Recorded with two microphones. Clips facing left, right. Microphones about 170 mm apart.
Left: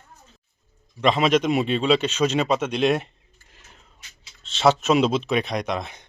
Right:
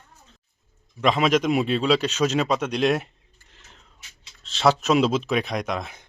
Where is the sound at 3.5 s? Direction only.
10° left (ahead or behind).